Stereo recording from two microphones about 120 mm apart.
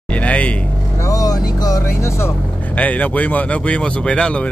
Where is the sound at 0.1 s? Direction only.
10° left (ahead or behind).